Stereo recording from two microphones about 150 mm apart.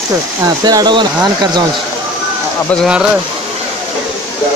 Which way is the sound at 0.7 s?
25° right (ahead or behind).